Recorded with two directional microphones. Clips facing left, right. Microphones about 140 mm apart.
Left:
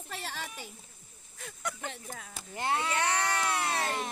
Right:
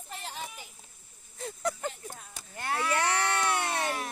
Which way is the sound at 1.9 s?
90° left.